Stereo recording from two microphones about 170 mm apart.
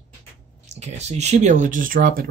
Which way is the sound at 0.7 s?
40° right (ahead or behind).